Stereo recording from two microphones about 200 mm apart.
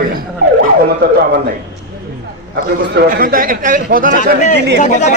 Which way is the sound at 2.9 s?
45° right (ahead or behind).